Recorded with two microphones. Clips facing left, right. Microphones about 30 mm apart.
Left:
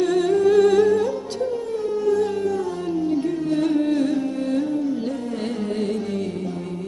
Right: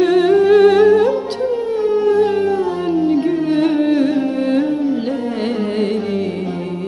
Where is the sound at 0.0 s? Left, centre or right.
Right.